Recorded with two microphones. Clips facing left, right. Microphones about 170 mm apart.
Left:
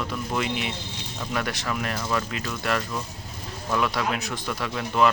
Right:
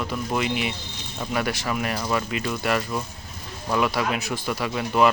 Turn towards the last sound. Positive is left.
turn(degrees=-10)  # may be behind; listen again after turning